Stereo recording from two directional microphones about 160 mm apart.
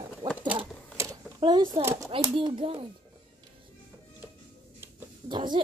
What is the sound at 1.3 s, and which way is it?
A child's voice, 25° right (ahead or behind).